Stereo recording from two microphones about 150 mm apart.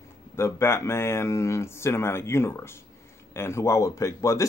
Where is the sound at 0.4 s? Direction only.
20° left (ahead or behind).